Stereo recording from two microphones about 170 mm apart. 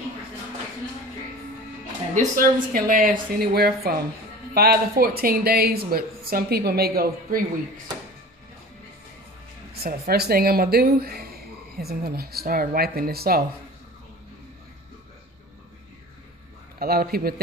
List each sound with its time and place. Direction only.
2.1 s speech: 55° right (ahead or behind)
9.8 s speech: 65° right (ahead or behind)
16.8 s speech: 60° right (ahead or behind)